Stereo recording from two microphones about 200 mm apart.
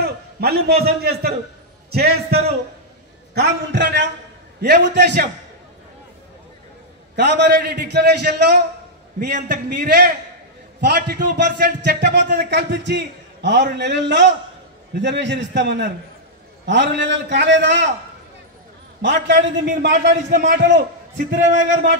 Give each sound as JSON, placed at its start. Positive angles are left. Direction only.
{"t": 0.0, "sound": "a man's voice", "side_deg": -50}
{"t": 7.2, "sound": "a man's voice", "side_deg": -60}
{"t": 18.9, "sound": "a man's voice", "side_deg": -60}
{"t": 20.2, "sound": "a man's voice", "side_deg": -40}